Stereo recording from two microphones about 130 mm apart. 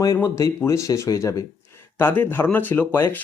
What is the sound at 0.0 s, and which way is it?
Speech, 25° left (ahead or behind).